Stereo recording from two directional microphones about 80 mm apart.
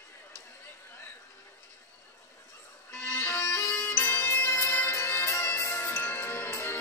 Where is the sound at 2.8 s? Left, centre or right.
Left.